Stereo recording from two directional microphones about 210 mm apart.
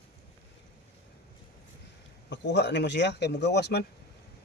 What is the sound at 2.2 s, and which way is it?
Speech, 55° left (ahead or behind).